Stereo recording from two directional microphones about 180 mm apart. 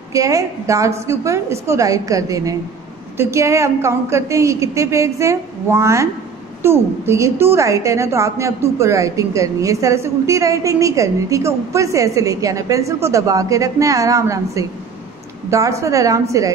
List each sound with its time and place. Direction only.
0.1 s a woman's voice: 20° right (ahead or behind)